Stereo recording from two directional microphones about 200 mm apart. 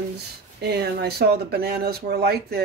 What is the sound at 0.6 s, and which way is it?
Speech, 55° right (ahead or behind).